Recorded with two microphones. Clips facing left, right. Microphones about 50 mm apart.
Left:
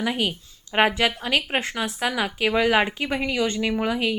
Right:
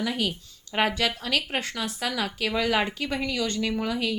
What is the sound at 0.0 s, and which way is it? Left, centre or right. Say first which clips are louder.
A woman's voice: left 3 dB; left.